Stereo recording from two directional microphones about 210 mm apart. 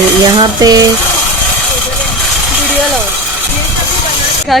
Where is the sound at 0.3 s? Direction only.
20° right (ahead or behind).